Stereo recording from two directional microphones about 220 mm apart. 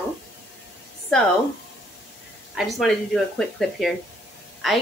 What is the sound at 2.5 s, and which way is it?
Speech, centre (ahead or behind).